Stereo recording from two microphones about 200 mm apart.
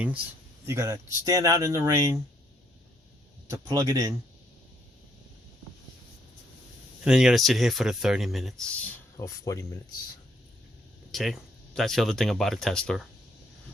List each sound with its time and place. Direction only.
0.6 s speech: 15° right (ahead or behind)
3.5 s speech: 20° right (ahead or behind)
7.0 s speech: 5° right (ahead or behind)
9.1 s speech: 15° left (ahead or behind)
11.1 s speech: centre (ahead or behind)